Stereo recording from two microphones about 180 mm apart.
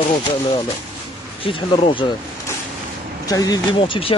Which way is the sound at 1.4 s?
30° left (ahead or behind).